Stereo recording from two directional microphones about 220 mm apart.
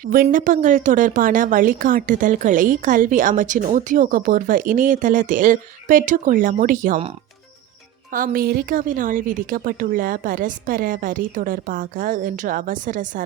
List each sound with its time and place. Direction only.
0.0 s a woman's voice: 40° right (ahead or behind)
8.1 s a woman's voice: 40° right (ahead or behind)